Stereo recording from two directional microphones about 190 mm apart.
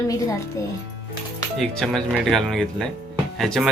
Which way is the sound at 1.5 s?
Centre (ahead or behind).